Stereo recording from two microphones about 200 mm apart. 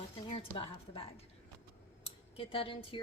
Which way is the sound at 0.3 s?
25° left (ahead or behind).